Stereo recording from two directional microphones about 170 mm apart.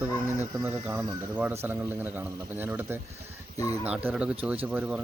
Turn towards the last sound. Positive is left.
turn(degrees=-10)  # may be behind; listen again after turning